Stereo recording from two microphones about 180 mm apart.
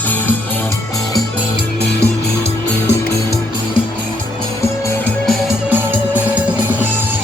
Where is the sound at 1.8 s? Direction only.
70° left (ahead or behind).